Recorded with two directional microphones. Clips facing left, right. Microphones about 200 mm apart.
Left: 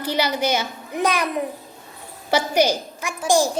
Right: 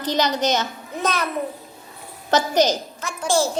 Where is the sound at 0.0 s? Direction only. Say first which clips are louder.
Right 1 dB; 10° left (ahead or behind).